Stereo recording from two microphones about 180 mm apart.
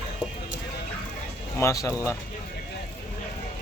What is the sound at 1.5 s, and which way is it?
Speech, 15° left (ahead or behind).